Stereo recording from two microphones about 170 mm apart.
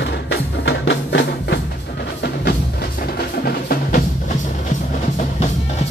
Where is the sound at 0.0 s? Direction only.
90° left.